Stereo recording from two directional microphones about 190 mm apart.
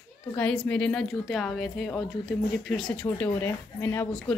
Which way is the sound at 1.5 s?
Centre (ahead or behind).